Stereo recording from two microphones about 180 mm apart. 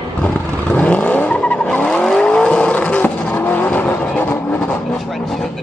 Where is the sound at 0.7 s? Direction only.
10° left (ahead or behind).